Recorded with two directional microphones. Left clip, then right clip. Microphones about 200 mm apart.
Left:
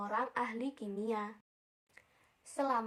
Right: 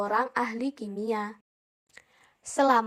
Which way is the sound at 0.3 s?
30° right (ahead or behind).